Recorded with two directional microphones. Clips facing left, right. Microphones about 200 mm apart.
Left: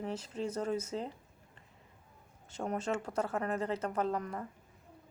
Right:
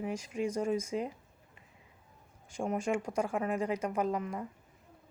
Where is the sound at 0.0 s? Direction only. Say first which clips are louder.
Right 3 dB; 10° right (ahead or behind).